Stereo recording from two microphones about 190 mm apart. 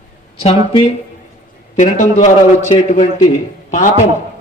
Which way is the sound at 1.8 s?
40° left (ahead or behind).